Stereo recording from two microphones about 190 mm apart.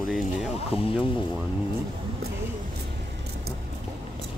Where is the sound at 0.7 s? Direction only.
30° left (ahead or behind).